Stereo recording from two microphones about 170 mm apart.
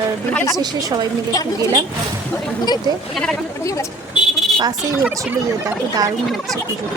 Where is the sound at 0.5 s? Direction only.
25° right (ahead or behind).